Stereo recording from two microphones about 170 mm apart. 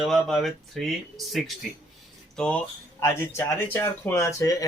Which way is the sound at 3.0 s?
15° left (ahead or behind).